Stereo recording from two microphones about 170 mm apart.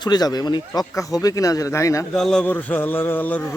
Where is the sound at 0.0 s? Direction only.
25° left (ahead or behind).